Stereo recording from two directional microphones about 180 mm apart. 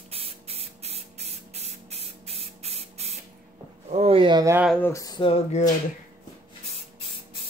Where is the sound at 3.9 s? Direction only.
35° right (ahead or behind).